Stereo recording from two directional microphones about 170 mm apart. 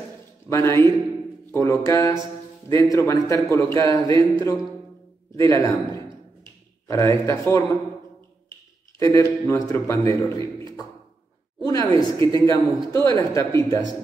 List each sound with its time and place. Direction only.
0.5 s a man's voice: 15° left (ahead or behind)
9.0 s a man's voice: 20° left (ahead or behind)
11.6 s a man's voice: 25° left (ahead or behind)